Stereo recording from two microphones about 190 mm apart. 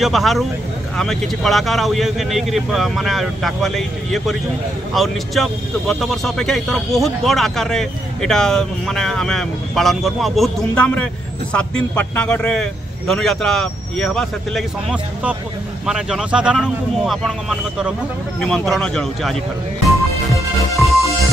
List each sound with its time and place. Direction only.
0.0 s speech: centre (ahead or behind)
20.7 s music: centre (ahead or behind)